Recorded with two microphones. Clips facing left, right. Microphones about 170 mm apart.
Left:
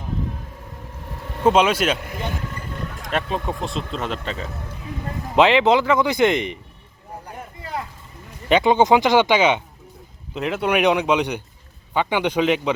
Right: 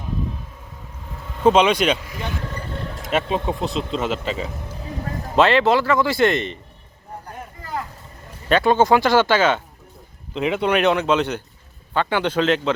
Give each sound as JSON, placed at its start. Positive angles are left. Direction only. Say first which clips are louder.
{"t": 1.5, "sound": "speech", "louder": "right 1 dB", "side_deg": 5}
{"t": 3.1, "sound": "speech", "louder": "right 3 dB", "side_deg": 0}
{"t": 5.4, "sound": "speech", "louder": "left 1 dB", "side_deg": 15}
{"t": 8.4, "sound": "speech", "louder": "even", "side_deg": 20}
{"t": 10.3, "sound": "speech", "louder": "right 1 dB", "side_deg": 5}